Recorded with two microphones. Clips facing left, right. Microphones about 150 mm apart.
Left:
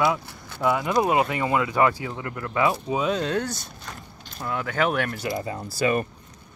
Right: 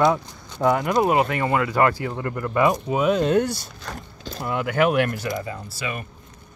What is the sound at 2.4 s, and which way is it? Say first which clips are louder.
Speech: right 3 dB; 15° right (ahead or behind).